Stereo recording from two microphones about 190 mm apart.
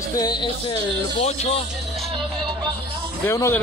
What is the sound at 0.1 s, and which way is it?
Speech, 20° left (ahead or behind).